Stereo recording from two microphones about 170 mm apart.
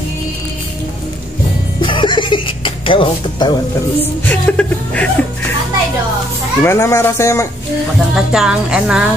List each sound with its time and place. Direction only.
1.8 s a sound: 30° left (ahead or behind)
4.0 s music: 10° left (ahead or behind)
6.6 s music: 15° left (ahead or behind)
8.1 s a woman's voice: 5° right (ahead or behind)